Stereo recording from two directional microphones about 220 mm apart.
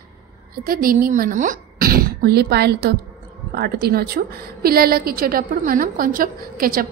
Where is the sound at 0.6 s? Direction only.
40° right (ahead or behind).